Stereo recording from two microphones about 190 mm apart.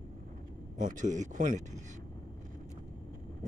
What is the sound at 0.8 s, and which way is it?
Speech, 40° right (ahead or behind).